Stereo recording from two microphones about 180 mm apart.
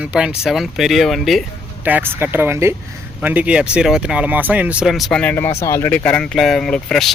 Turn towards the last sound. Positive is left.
turn(degrees=5)  # may be behind; listen again after turning